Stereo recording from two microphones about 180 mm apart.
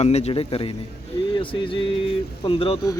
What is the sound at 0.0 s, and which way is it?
Speech, 35° left (ahead or behind).